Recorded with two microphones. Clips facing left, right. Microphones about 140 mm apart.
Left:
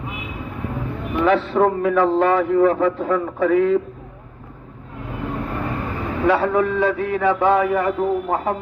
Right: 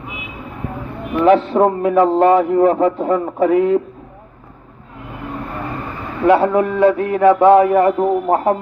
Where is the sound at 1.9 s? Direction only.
45° right (ahead or behind).